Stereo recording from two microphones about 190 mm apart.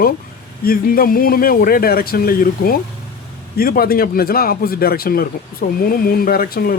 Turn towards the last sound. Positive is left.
turn(degrees=50)  # may be behind; listen again after turning